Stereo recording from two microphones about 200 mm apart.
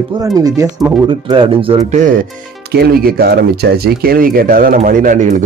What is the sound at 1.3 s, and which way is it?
Speech, 25° right (ahead or behind).